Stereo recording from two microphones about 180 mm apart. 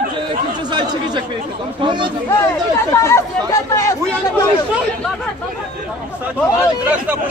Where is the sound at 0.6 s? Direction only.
25° right (ahead or behind).